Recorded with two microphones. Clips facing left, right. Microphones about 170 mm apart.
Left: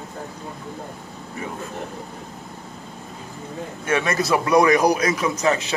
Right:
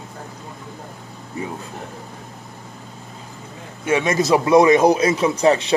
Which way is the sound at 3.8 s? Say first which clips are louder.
Right 4 dB; 15° right (ahead or behind).